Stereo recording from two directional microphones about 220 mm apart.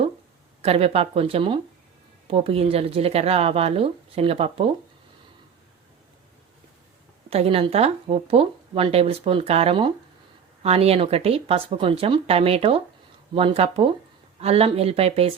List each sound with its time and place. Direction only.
0.6 s speech: 25° right (ahead or behind)
7.3 s speech: 25° right (ahead or behind)